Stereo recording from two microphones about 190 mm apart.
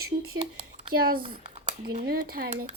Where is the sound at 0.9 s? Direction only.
50° right (ahead or behind).